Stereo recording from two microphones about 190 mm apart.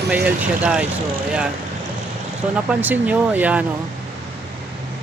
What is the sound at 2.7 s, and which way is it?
Speech, 10° right (ahead or behind).